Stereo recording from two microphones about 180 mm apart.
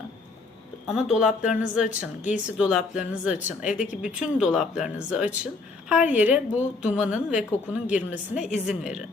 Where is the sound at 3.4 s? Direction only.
45° left (ahead or behind).